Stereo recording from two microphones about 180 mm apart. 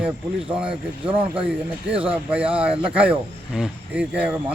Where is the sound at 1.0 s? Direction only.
30° right (ahead or behind).